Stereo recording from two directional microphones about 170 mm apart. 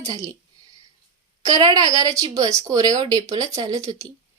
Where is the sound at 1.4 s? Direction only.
20° right (ahead or behind).